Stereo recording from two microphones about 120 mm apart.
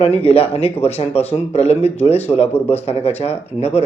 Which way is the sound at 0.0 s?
60° left (ahead or behind).